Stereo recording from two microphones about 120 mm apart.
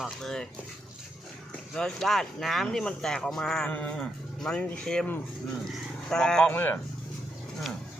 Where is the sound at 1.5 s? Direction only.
5° left (ahead or behind).